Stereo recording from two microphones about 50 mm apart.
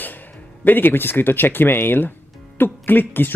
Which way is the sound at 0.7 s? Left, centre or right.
Left.